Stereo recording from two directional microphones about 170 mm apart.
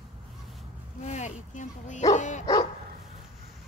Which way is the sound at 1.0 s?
40° left (ahead or behind).